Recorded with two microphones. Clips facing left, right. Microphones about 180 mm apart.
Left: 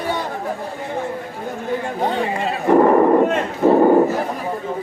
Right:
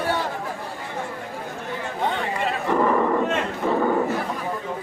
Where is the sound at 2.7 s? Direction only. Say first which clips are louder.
Left 9 dB; 45° left (ahead or behind).